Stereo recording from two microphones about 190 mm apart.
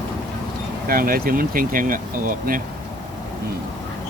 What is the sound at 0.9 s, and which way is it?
Speech, 50° right (ahead or behind).